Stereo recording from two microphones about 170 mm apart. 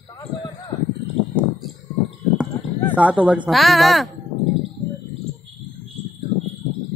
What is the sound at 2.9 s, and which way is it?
A woman's voice, 10° right (ahead or behind).